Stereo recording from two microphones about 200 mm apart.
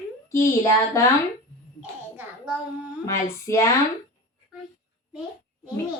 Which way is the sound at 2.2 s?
5° right (ahead or behind).